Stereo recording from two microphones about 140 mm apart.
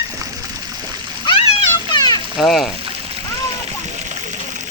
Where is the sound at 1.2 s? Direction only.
45° left (ahead or behind).